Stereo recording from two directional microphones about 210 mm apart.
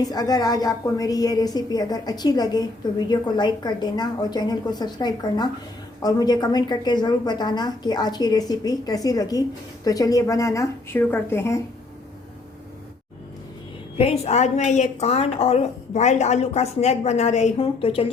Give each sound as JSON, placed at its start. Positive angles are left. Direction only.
{"t": 0.1, "sound": "a woman's voice", "side_deg": 20}
{"t": 14.0, "sound": "a woman's voice", "side_deg": 30}